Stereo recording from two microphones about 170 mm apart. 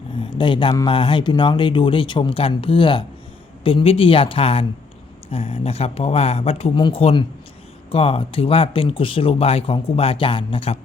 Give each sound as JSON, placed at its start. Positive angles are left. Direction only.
{"t": 0.2, "sound": "speech", "side_deg": 30}